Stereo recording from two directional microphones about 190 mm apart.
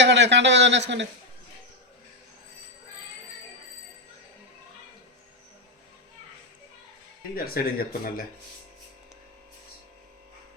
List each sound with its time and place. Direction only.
0.0 s speech: 65° right (ahead or behind)
7.3 s speech: 50° left (ahead or behind)